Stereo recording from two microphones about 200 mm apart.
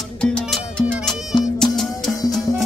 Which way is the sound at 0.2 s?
5° left (ahead or behind).